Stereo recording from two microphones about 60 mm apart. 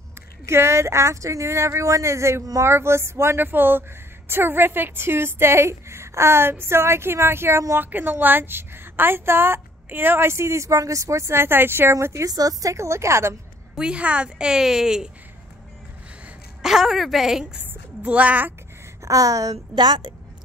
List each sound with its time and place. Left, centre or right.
0.5 s a woman's voice: right
7.8 s a woman's voice: right
11.9 s a woman's voice: right
12.3 s a woman's voice: right
12.7 s a woman's voice: right
13.7 s a woman's voice: centre
16.6 s a woman's voice: centre
17.6 s speech: right
19.0 s a woman's voice: right